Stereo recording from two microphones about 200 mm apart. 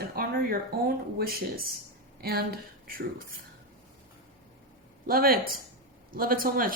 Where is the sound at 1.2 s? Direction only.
45° right (ahead or behind).